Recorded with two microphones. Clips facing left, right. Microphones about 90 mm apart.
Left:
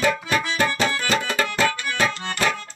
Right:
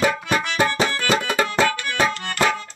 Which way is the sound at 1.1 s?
15° right (ahead or behind).